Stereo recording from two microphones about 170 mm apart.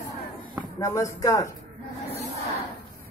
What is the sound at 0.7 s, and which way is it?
Speech, 20° left (ahead or behind).